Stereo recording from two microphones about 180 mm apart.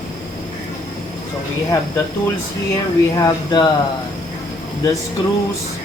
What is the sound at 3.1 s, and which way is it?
Speech, 20° left (ahead or behind).